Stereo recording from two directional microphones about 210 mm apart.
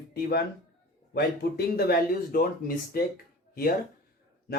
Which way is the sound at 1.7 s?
45° left (ahead or behind).